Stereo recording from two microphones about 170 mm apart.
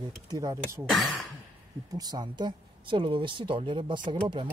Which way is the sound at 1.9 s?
20° right (ahead or behind).